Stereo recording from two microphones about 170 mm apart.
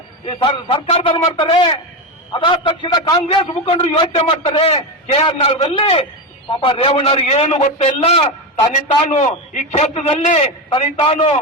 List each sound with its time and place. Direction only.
0.3 s a man's voice: 35° left (ahead or behind)